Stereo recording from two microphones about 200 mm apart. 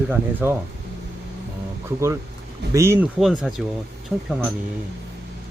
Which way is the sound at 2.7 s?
15° right (ahead or behind).